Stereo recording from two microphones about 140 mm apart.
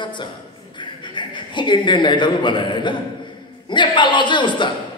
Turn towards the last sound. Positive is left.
turn(degrees=35)  # may be behind; listen again after turning